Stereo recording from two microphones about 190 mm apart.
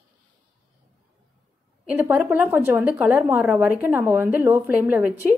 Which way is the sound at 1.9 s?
10° right (ahead or behind).